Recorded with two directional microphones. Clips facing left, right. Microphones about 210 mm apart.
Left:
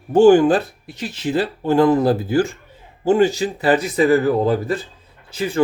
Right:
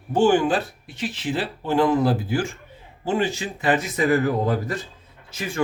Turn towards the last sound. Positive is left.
turn(degrees=30)  # may be behind; listen again after turning